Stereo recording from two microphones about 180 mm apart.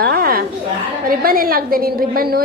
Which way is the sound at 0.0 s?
55° right (ahead or behind).